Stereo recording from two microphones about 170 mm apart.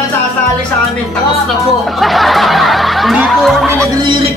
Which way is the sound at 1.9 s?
Centre (ahead or behind).